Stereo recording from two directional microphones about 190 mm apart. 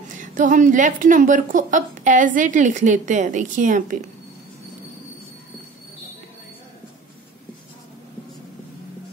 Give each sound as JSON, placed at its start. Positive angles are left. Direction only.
{"t": 0.2, "sound": "a woman's voice", "side_deg": -45}